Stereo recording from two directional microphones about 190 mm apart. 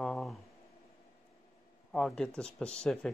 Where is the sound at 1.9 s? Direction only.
5° left (ahead or behind).